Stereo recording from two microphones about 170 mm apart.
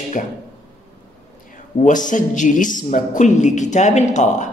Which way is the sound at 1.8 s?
50° left (ahead or behind).